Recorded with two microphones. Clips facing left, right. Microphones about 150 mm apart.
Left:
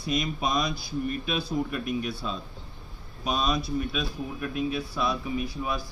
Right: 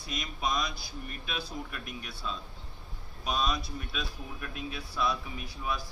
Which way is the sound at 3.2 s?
15° left (ahead or behind).